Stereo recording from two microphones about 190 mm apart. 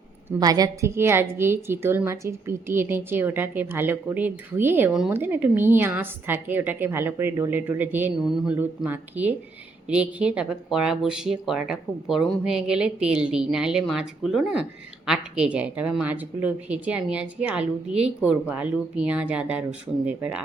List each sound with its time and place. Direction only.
0.3 s a woman's voice: 20° right (ahead or behind)